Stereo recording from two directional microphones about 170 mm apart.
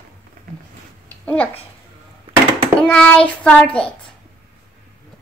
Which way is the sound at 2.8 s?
5° left (ahead or behind).